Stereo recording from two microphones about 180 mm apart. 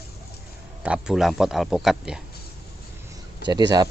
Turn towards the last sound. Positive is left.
turn(degrees=-20)  # may be behind; listen again after turning